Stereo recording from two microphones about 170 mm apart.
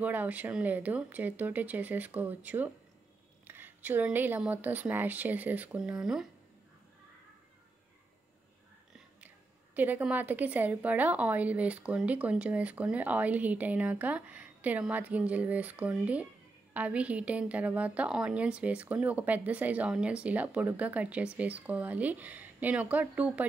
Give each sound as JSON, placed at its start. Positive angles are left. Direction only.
{"t": 0.0, "sound": "a woman's voice", "side_deg": -10}
{"t": 9.8, "sound": "a woman's voice", "side_deg": -10}